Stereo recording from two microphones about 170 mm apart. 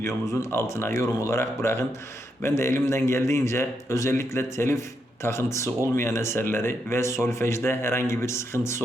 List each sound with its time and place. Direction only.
0.0 s speech: 15° left (ahead or behind)